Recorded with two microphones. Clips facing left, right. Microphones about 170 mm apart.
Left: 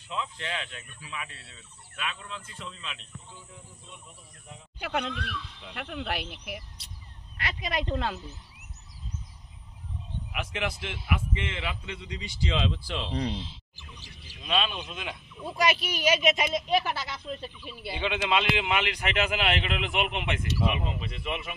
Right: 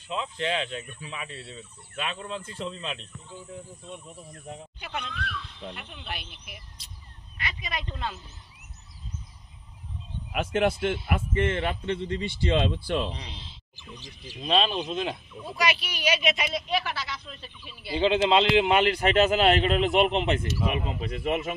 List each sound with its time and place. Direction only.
0.1 s speech: 25° right (ahead or behind)
4.7 s speech: 70° left (ahead or behind)
5.8 s speech: 80° left
10.5 s a man's voice: 45° right (ahead or behind)
13.4 s speech: 10° left (ahead or behind)
14.4 s a man's voice: 35° right (ahead or behind)
15.5 s speech: 50° left (ahead or behind)
18.0 s a man's voice: 30° right (ahead or behind); by 21.5 s 45° right (ahead or behind)